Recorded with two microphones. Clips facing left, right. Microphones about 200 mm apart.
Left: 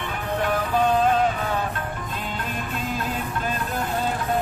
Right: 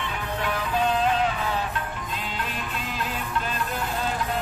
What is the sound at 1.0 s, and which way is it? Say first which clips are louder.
Music: left 3 dB; 45° left (ahead or behind).